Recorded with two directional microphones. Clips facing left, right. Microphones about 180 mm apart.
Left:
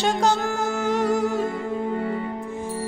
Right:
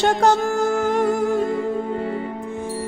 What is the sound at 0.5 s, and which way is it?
Music, 50° right (ahead or behind).